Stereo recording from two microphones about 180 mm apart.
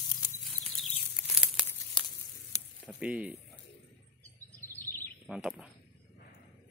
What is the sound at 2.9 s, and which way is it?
Speech, 5° right (ahead or behind).